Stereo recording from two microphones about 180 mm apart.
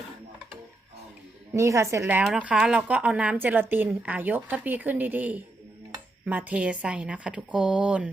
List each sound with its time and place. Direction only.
1.5 s speech: 15° right (ahead or behind)